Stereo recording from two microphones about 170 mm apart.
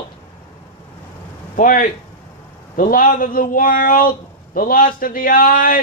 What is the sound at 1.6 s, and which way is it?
A man's voice, 50° left (ahead or behind).